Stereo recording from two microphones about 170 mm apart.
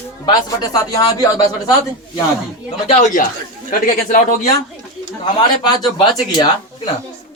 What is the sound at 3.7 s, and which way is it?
Speech, 55° left (ahead or behind).